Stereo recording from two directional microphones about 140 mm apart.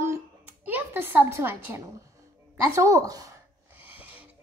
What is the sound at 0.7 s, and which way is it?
A woman's voice, 15° right (ahead or behind).